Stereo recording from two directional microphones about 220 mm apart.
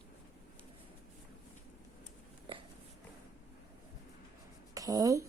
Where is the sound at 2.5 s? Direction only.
25° right (ahead or behind).